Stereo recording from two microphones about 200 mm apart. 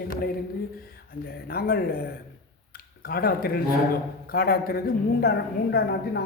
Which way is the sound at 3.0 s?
50° left (ahead or behind).